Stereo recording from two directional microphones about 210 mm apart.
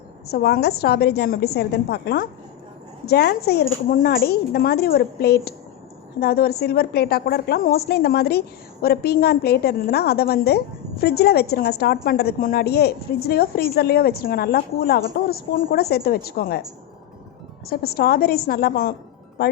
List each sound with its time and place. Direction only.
0.3 s a woman's voice: 50° left (ahead or behind)
17.7 s a woman's voice: 45° left (ahead or behind)